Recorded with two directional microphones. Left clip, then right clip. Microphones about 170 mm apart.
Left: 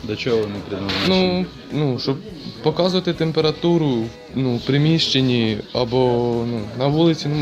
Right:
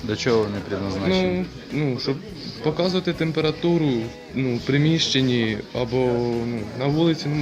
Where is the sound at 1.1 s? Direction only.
50° left (ahead or behind).